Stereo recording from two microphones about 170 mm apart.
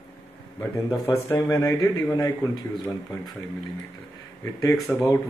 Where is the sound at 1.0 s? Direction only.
20° left (ahead or behind).